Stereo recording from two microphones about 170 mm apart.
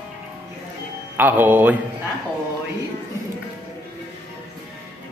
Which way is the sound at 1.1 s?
10° right (ahead or behind).